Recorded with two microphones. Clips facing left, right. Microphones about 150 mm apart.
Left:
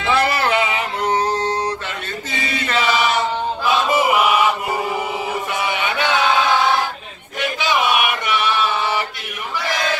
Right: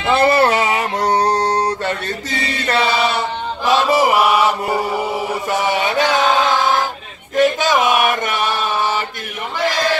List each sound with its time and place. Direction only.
0.1 s music: 30° right (ahead or behind)
1.3 s chant: 35° right (ahead or behind)
5.6 s a sound: 40° right (ahead or behind)
7.3 s chant: 45° right (ahead or behind)